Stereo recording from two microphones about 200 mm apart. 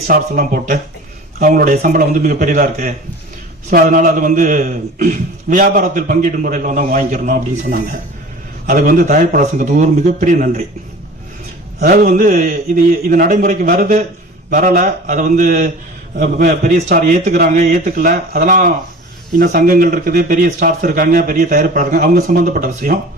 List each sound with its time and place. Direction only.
0.1 s a man's voice: 45° right (ahead or behind)
11.8 s a man's voice: 45° right (ahead or behind)